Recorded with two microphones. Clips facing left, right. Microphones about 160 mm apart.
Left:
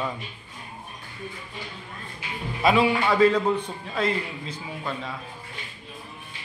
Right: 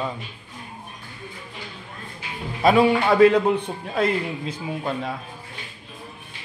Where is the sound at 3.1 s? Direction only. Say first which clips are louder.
Right 5 dB; 60° right (ahead or behind).